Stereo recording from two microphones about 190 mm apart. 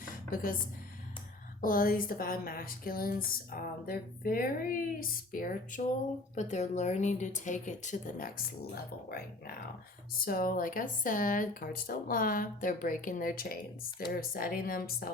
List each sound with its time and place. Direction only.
0.0 s a sound: 45° left (ahead or behind)
1.6 s speech: 50° left (ahead or behind)
8.7 s speech: 55° left (ahead or behind)